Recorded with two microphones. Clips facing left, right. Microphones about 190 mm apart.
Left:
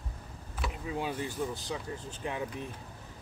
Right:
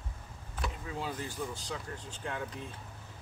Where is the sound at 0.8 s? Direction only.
15° left (ahead or behind).